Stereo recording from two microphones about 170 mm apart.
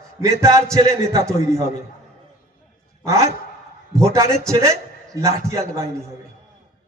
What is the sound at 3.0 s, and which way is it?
A man's voice, 20° right (ahead or behind).